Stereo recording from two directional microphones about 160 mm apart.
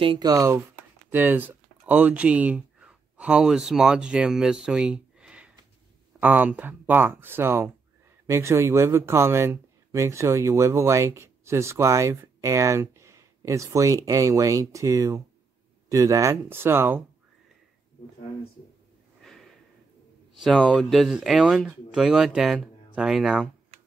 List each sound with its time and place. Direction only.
0.0 s speech: 30° right (ahead or behind)
19.2 s a sound: centre (ahead or behind)
20.3 s speech: centre (ahead or behind)